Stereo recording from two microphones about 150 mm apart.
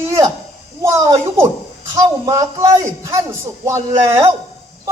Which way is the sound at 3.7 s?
20° right (ahead or behind).